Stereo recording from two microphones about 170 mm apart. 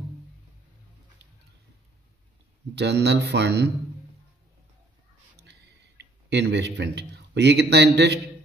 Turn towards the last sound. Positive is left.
turn(degrees=-80)